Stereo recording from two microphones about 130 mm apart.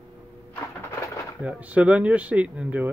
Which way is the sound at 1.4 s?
10° right (ahead or behind).